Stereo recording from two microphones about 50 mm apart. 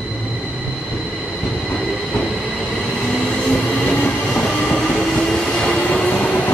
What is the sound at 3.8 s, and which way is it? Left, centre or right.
Train, left.